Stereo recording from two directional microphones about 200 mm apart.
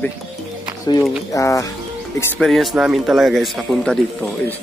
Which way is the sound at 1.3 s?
15° left (ahead or behind).